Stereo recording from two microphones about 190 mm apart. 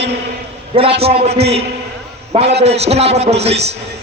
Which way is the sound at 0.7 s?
30° right (ahead or behind).